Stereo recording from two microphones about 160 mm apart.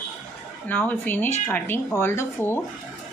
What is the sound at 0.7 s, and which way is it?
Speech, 10° left (ahead or behind).